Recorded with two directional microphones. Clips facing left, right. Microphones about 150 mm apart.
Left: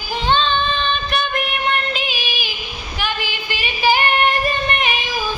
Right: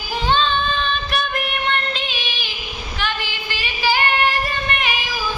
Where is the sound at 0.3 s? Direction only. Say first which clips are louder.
Left 1 dB; 5° right (ahead or behind); by 2.5 s 10° left (ahead or behind).